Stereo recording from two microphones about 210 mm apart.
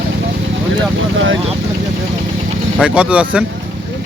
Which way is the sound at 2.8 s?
5° right (ahead or behind).